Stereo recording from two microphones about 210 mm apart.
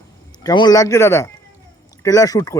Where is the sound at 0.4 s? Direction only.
20° left (ahead or behind).